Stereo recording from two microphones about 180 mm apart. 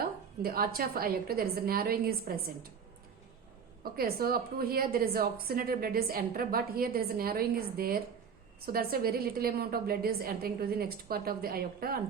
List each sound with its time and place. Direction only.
0.4 s a woman's voice: 55° right (ahead or behind)
3.9 s a woman's voice: 55° right (ahead or behind)